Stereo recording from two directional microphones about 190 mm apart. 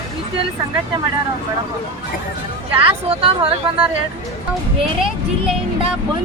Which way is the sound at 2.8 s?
30° right (ahead or behind).